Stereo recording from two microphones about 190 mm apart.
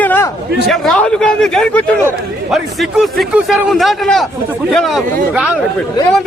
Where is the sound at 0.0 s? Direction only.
10° left (ahead or behind).